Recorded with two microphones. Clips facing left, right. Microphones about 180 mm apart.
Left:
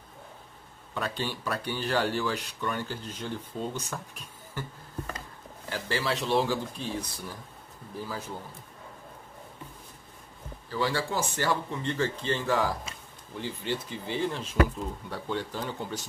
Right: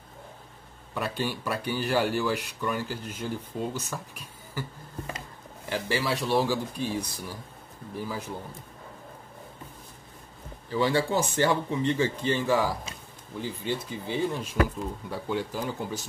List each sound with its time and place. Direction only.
0.9 s speech: 10° right (ahead or behind)
10.7 s speech: 20° right (ahead or behind)